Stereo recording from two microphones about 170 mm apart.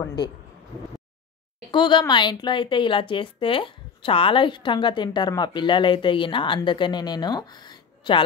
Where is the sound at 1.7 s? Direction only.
30° left (ahead or behind).